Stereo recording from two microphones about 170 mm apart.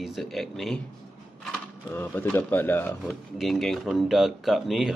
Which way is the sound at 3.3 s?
Centre (ahead or behind).